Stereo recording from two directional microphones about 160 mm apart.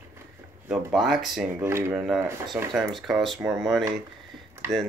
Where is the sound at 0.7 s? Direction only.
Centre (ahead or behind).